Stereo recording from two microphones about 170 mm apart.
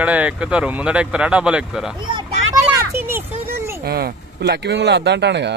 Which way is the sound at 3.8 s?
65° right (ahead or behind).